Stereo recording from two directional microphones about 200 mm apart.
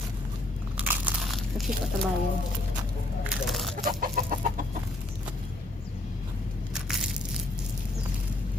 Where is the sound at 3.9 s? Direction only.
45° right (ahead or behind).